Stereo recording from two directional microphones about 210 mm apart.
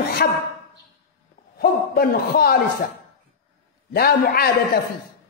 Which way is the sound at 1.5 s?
45° left (ahead or behind).